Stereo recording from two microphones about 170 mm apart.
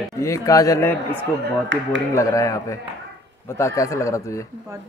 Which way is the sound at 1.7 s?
90° right.